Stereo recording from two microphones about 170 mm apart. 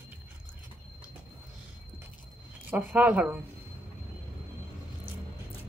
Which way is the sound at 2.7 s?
10° right (ahead or behind).